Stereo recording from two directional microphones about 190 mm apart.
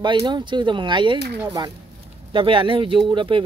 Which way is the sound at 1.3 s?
10° right (ahead or behind).